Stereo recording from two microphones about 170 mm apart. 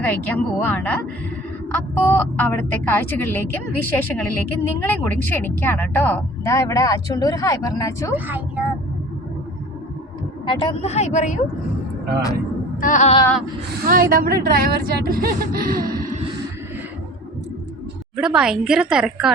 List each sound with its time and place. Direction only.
0.6 s speech: 10° left (ahead or behind)
8.1 s speech: 10° right (ahead or behind)
10.4 s speech: 30° left (ahead or behind)
12.8 s music: 45° left (ahead or behind)
13.8 s speech: 60° right (ahead or behind)
18.2 s a woman's voice: 5° right (ahead or behind)